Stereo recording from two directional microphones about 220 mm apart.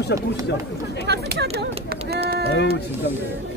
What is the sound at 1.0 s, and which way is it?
Speech, 50° right (ahead or behind).